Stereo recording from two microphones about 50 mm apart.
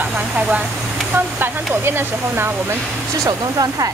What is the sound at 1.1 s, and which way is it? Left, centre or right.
Speech, right.